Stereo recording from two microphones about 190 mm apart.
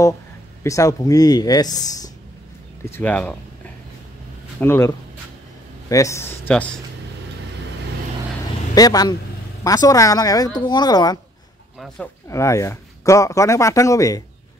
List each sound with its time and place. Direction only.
0.7 s a man's voice: 15° left (ahead or behind)
4.6 s a man's voice: 15° left (ahead or behind)
8.7 s speech: 20° left (ahead or behind)
12.3 s a man's voice: 15° left (ahead or behind)